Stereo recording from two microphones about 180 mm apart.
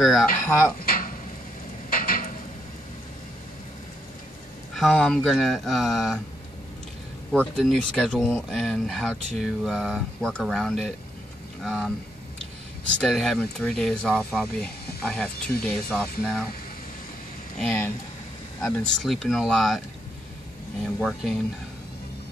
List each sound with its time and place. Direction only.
0.0 s speech: centre (ahead or behind)
0.5 s speech: 15° left (ahead or behind)
0.7 s a sound: 55° left (ahead or behind)
4.7 s speech: 5° left (ahead or behind)
7.3 s speech: 5° left (ahead or behind)
13.0 s speech: centre (ahead or behind)
15.0 s a sound: 5° left (ahead or behind)
15.6 s speech: 5° left (ahead or behind)
18.6 s speech: 5° left (ahead or behind)
20.8 s speech: centre (ahead or behind)